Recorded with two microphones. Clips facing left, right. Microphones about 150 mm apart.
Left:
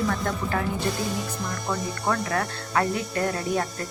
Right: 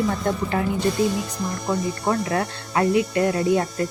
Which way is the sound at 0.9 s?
Centre (ahead or behind).